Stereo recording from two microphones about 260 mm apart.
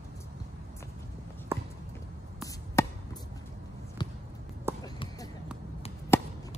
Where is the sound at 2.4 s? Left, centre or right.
Centre.